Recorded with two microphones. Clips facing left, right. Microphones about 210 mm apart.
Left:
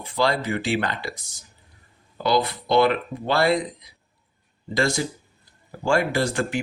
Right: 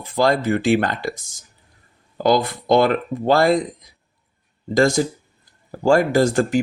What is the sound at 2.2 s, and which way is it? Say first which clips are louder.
Speech: right 5 dB; 45° right (ahead or behind).